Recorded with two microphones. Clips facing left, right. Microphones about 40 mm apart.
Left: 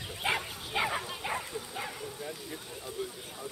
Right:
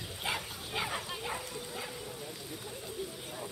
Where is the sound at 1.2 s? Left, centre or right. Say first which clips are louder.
Left 3 dB; left.